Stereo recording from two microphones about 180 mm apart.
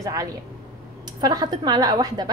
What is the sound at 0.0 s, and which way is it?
A woman's voice, 20° right (ahead or behind).